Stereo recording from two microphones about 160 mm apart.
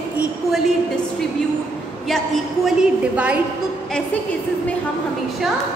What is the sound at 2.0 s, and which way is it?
A woman's voice, centre (ahead or behind).